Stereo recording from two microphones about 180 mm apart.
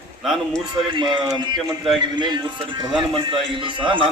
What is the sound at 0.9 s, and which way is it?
A man's voice, 25° right (ahead or behind).